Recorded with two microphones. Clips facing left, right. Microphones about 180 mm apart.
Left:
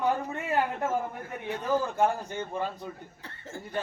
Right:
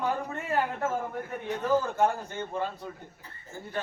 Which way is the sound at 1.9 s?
15° left (ahead or behind).